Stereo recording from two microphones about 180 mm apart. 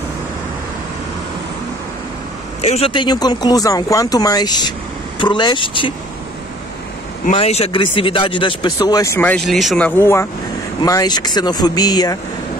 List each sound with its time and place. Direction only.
2.6 s speech: 35° left (ahead or behind)
7.2 s speech: 35° left (ahead or behind)